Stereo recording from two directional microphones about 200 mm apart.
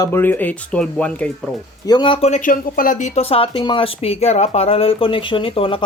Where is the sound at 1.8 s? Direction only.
20° left (ahead or behind).